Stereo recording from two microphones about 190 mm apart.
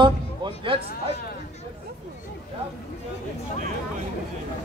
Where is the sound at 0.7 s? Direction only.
30° right (ahead or behind).